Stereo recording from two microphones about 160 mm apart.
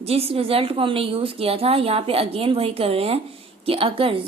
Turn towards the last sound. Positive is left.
turn(degrees=-35)  # may be behind; listen again after turning